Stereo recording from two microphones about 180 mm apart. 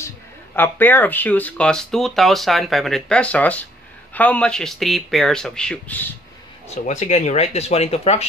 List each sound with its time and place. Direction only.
0.6 s speech: 10° left (ahead or behind)
6.7 s speech: 40° left (ahead or behind)